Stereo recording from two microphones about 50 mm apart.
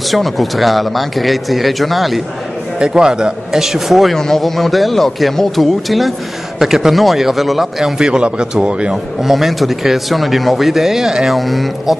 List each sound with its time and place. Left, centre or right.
0.1 s speech: centre
2.8 s speech: centre
4.1 s speech: centre
8.0 s a man's voice: centre
9.2 s speech: centre
11.3 s speech: centre